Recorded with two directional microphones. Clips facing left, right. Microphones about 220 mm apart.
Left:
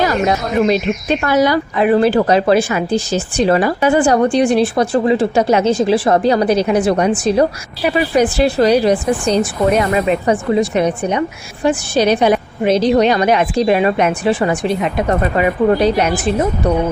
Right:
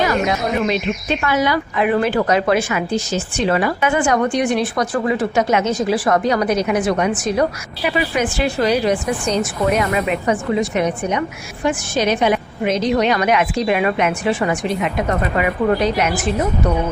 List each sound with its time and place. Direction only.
0.3 s speech: 40° left (ahead or behind)